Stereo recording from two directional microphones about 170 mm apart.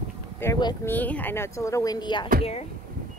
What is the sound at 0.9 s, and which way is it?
Speech, 10° left (ahead or behind).